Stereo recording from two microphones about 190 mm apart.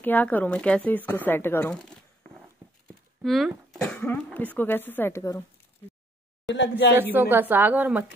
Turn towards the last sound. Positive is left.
turn(degrees=-10)  # may be behind; listen again after turning